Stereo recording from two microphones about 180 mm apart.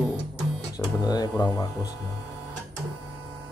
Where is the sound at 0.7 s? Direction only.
20° left (ahead or behind).